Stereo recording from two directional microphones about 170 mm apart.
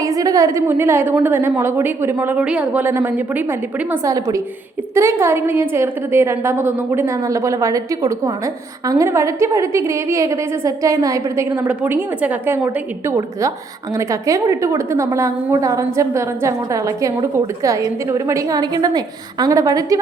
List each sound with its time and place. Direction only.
0.0 s a woman's voice: 20° right (ahead or behind)